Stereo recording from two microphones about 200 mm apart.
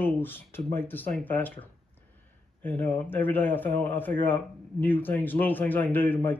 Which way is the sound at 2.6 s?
10° left (ahead or behind).